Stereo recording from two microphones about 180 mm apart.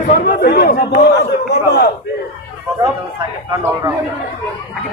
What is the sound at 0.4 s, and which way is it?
Speech, 60° left (ahead or behind).